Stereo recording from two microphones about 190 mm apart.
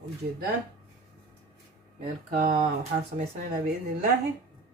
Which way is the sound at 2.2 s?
45° right (ahead or behind).